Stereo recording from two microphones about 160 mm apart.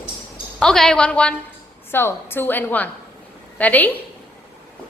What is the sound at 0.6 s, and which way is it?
A woman's voice, 5° left (ahead or behind).